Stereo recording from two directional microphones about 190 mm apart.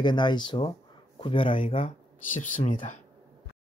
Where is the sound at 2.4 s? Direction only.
40° left (ahead or behind).